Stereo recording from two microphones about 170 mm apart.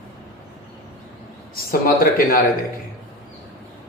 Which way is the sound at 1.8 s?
55° left (ahead or behind).